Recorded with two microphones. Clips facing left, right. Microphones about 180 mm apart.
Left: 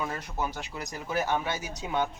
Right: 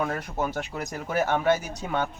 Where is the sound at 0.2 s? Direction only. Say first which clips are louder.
Right 5 dB; 55° right (ahead or behind).